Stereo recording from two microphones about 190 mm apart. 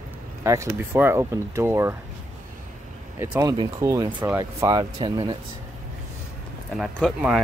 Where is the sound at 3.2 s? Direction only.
15° right (ahead or behind).